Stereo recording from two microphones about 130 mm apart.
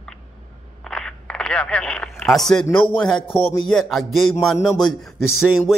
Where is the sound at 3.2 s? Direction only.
45° left (ahead or behind).